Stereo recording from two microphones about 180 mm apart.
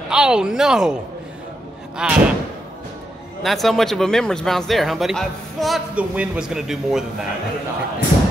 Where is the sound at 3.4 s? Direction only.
Centre (ahead or behind).